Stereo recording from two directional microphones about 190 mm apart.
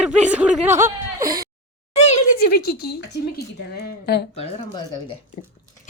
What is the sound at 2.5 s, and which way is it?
Speech, 55° left (ahead or behind).